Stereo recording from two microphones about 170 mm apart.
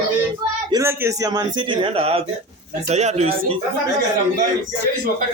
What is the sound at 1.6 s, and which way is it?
Speech, 30° right (ahead or behind).